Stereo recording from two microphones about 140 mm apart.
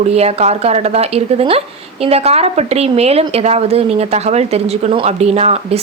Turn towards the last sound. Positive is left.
turn(degrees=-45)  # may be behind; listen again after turning